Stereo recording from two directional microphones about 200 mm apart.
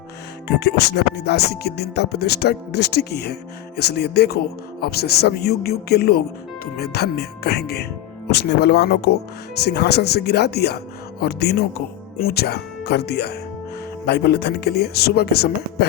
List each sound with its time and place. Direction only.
0.4 s music: 55° left (ahead or behind)
3.8 s speech: 55° left (ahead or behind)
8.3 s music: 55° left (ahead or behind)
11.2 s speech: 55° left (ahead or behind)